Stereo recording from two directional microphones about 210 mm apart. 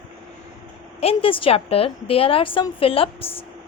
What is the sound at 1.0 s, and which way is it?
A woman's voice, 25° left (ahead or behind).